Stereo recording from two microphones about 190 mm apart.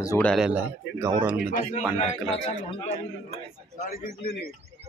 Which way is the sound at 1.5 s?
40° left (ahead or behind).